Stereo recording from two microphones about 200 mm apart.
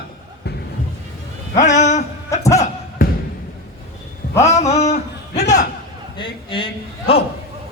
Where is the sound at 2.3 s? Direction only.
15° left (ahead or behind).